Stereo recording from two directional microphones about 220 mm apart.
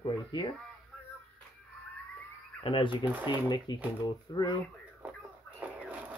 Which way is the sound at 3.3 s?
20° left (ahead or behind).